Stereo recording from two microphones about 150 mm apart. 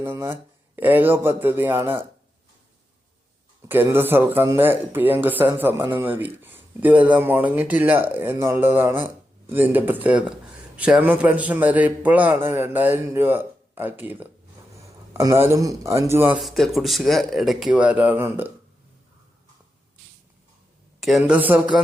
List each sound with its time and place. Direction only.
0.0 s speech: 15° right (ahead or behind)
3.7 s speech: 15° right (ahead or behind)
16.4 s speech: centre (ahead or behind)
21.0 s speech: centre (ahead or behind)